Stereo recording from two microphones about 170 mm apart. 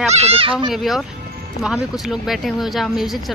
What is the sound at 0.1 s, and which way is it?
Speech, 35° right (ahead or behind).